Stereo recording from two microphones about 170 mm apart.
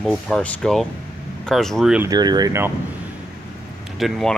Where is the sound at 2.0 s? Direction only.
25° right (ahead or behind).